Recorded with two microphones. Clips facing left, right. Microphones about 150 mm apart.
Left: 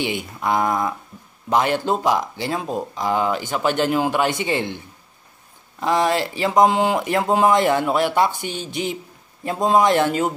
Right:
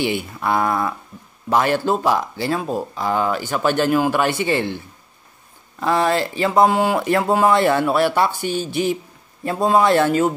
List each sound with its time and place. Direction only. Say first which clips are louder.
0.0 s speech: right 2 dB; 15° left (ahead or behind)
5.8 s speech: right 1 dB; 15° left (ahead or behind)